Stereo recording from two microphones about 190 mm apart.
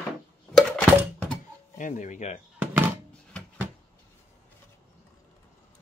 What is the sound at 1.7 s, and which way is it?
Speech, 40° left (ahead or behind).